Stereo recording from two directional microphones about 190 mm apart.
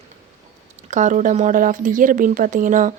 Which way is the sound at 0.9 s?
40° right (ahead or behind).